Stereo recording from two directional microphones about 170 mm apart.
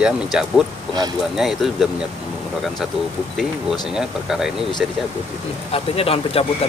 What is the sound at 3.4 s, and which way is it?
Speech, 5° right (ahead or behind).